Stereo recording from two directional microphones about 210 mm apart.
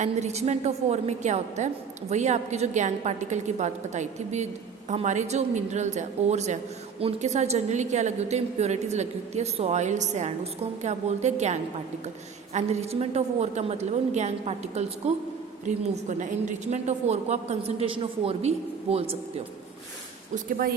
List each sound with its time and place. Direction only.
0.0 s a woman's voice: 30° right (ahead or behind)
20.3 s a woman's voice: 40° right (ahead or behind)